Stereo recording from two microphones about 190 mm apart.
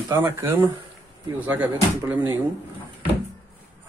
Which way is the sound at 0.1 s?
15° right (ahead or behind).